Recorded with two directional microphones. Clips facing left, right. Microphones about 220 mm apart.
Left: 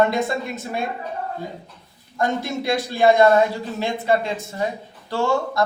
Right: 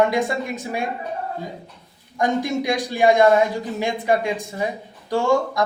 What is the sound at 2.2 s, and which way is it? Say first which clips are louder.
A man's voice: right 2 dB; 15° right (ahead or behind).